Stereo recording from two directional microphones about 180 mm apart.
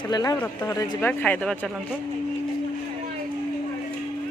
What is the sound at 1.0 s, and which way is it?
Speech, 10° left (ahead or behind).